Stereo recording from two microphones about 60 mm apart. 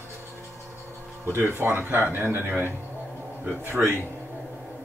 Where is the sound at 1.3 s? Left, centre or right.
Right.